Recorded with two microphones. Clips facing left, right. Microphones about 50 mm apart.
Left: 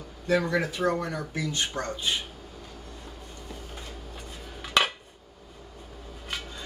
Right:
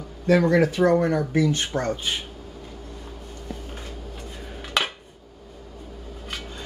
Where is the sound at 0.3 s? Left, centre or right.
Right.